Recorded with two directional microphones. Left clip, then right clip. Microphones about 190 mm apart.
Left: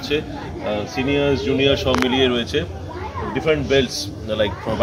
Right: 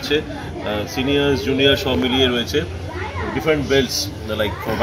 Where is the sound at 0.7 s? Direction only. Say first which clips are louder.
Even; 10° left (ahead or behind).